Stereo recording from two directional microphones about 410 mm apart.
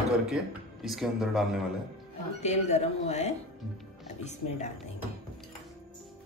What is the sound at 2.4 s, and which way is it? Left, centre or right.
A woman's voice, centre.